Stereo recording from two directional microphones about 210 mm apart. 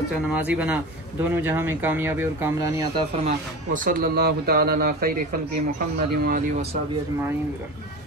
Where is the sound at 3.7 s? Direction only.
45° right (ahead or behind).